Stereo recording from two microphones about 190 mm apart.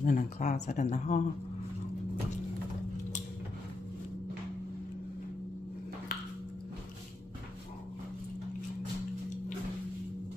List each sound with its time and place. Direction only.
0.0 s speech: 45° left (ahead or behind)